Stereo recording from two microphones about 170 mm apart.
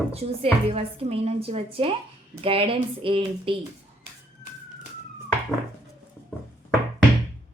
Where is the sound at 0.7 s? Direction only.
35° right (ahead or behind).